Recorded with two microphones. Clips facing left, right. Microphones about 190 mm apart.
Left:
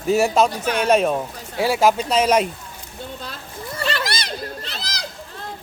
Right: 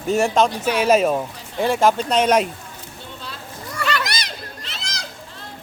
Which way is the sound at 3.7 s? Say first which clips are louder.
Even; 30° left (ahead or behind).